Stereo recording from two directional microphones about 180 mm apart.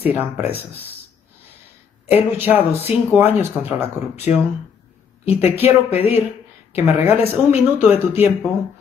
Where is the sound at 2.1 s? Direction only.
10° right (ahead or behind).